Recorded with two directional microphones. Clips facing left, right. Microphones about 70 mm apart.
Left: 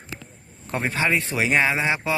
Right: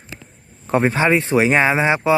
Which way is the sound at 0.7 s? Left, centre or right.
Right.